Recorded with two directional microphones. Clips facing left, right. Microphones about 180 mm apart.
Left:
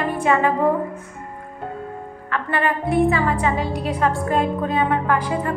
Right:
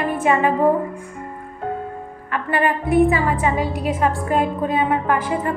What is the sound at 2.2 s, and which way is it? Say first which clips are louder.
A woman's voice: right 2 dB; 15° right (ahead or behind).